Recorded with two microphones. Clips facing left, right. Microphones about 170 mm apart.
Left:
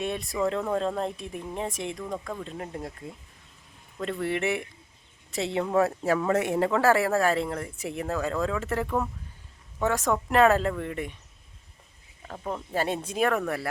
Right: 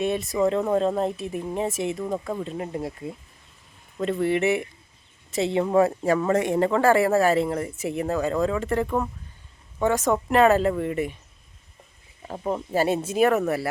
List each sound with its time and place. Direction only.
0.0 s speech: centre (ahead or behind)
4.2 s speech: centre (ahead or behind)
12.3 s speech: 20° right (ahead or behind)
12.7 s speech: 5° right (ahead or behind)